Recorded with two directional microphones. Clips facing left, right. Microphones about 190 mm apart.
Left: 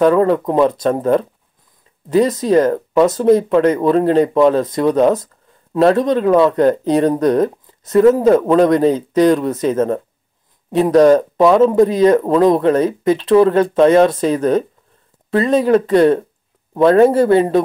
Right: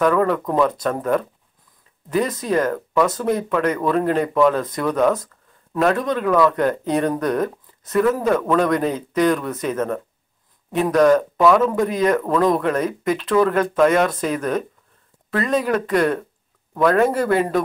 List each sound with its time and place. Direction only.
0.0 s speech: 30° left (ahead or behind)